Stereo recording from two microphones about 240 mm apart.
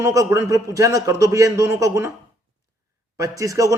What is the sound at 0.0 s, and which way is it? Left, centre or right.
Speech, centre.